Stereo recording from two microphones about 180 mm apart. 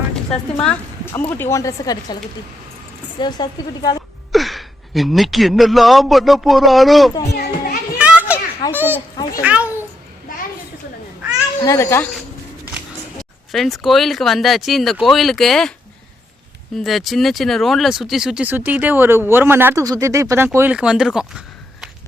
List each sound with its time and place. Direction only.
0.6 s a woman's voice: 10° left (ahead or behind)
3.2 s a woman's voice: 25° left (ahead or behind)
4.3 s speech: centre (ahead or behind)
7.3 s children playing: 60° left (ahead or behind)
7.9 s children playing: 5° right (ahead or behind)
9.4 s a sound: 10° right (ahead or behind)
11.6 s a woman's voice: 15° left (ahead or behind)
13.5 s speech: centre (ahead or behind)
16.8 s speech: centre (ahead or behind)